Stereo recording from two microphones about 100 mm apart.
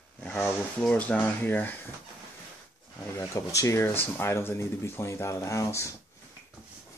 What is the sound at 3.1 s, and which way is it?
Speech, 30° left (ahead or behind).